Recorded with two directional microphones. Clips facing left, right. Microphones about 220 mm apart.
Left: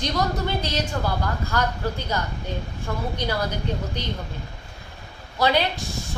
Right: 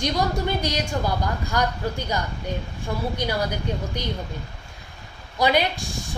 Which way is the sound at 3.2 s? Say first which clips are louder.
Left 1 dB; 10° right (ahead or behind).